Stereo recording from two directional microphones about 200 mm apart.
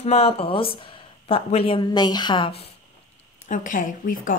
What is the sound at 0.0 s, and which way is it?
Speech, 30° left (ahead or behind).